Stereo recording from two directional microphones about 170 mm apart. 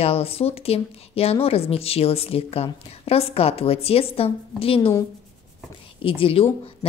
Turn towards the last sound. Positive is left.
turn(degrees=30)  # may be behind; listen again after turning